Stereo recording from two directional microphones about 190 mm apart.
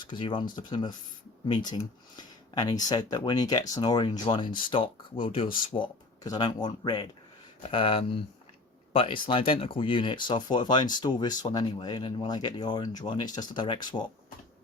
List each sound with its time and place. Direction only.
0.0 s speech: 25° left (ahead or behind)